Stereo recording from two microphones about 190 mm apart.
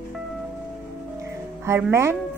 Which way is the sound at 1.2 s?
15° right (ahead or behind).